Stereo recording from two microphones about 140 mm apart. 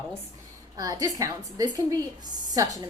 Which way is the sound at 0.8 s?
25° right (ahead or behind).